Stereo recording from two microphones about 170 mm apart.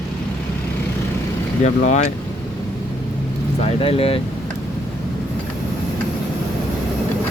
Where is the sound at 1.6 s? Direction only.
45° left (ahead or behind).